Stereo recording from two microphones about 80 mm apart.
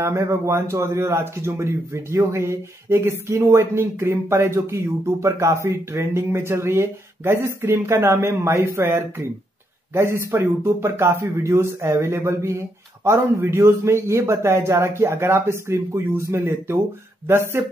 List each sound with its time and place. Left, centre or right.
0.0 s speech: right